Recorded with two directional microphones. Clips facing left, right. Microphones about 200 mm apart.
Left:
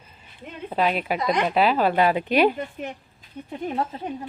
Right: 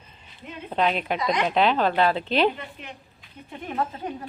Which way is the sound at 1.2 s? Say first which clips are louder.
Left 2 dB; 50° left (ahead or behind).